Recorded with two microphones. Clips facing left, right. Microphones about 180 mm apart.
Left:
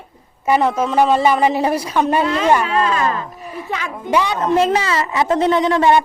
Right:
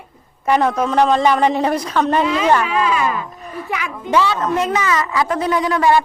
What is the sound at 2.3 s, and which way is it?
Speech, 5° right (ahead or behind).